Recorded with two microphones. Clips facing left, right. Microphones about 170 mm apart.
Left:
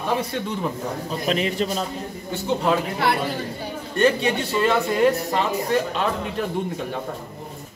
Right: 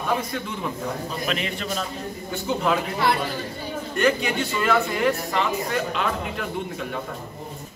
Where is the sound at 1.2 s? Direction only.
35° left (ahead or behind).